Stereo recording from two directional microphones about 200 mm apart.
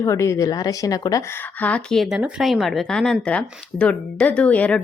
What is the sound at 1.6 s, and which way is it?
Speech, 5° left (ahead or behind).